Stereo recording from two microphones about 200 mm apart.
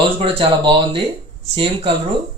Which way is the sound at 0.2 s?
25° right (ahead or behind).